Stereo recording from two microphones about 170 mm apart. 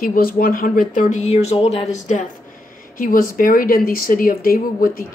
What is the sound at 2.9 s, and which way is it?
Speech, 55° left (ahead or behind).